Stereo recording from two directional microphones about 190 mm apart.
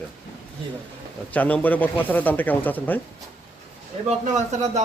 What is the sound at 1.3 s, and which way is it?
Speech, 10° left (ahead or behind).